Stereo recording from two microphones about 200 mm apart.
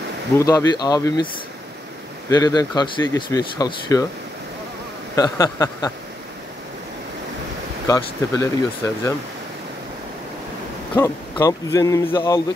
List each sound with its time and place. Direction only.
0.4 s speech: 15° left (ahead or behind)
5.1 s speech: 15° left (ahead or behind)
7.8 s speech: 15° left (ahead or behind)
11.0 s speech: 15° left (ahead or behind)